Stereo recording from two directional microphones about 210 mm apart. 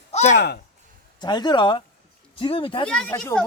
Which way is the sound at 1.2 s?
20° left (ahead or behind).